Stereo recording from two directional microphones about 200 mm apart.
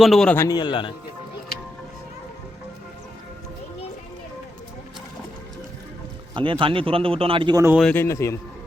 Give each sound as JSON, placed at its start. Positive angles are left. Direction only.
{"t": 0.0, "sound": "a man's voice", "side_deg": 0}
{"t": 0.4, "sound": "speech", "side_deg": 20}
{"t": 6.3, "sound": "a man's voice", "side_deg": -25}
{"t": 7.8, "sound": "a man's voice", "side_deg": 5}